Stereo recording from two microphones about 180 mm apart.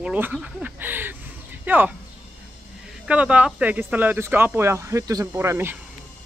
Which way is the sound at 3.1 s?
5° right (ahead or behind).